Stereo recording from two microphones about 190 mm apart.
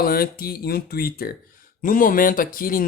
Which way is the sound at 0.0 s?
50° left (ahead or behind).